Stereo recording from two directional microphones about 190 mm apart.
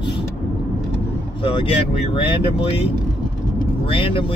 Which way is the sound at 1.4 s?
30° left (ahead or behind).